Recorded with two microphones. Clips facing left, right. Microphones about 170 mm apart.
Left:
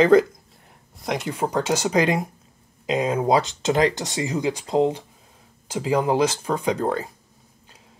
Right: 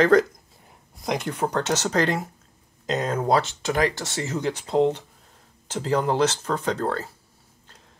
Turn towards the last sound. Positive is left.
turn(degrees=15)  # may be behind; listen again after turning